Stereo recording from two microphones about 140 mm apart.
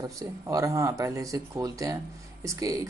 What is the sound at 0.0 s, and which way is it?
Speech, 25° right (ahead or behind).